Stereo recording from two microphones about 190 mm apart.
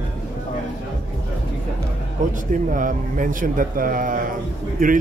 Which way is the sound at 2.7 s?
45° right (ahead or behind).